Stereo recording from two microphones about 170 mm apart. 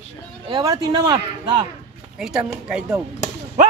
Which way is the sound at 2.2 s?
5° right (ahead or behind).